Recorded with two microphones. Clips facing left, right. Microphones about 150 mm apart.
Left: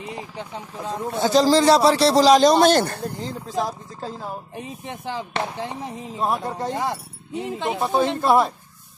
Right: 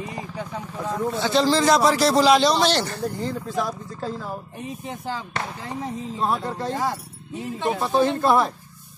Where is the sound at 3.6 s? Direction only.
40° left (ahead or behind).